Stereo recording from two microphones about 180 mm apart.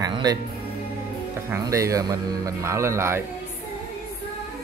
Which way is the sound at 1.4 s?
15° right (ahead or behind).